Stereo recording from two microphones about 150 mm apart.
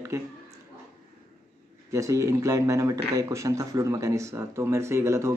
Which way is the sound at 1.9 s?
20° right (ahead or behind).